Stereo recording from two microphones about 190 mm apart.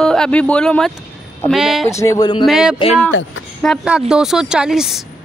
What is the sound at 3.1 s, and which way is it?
Speech, 90° left.